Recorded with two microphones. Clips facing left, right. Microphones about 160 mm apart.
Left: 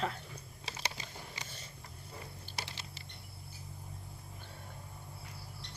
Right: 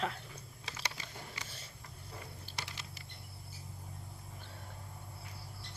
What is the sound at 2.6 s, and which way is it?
Typing, 30° left (ahead or behind).